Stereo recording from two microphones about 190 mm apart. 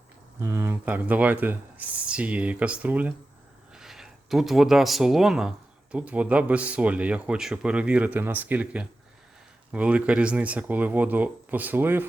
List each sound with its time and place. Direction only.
0.3 s speech: 15° right (ahead or behind)